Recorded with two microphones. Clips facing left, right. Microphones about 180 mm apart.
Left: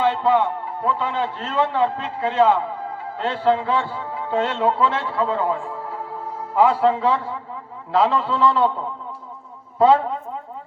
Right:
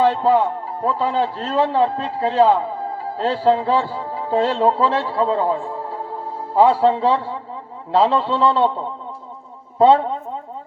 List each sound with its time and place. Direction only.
0.0 s a man's voice: 35° right (ahead or behind)